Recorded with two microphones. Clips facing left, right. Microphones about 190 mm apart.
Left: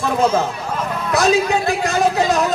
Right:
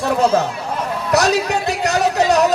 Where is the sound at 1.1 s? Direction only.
70° right (ahead or behind).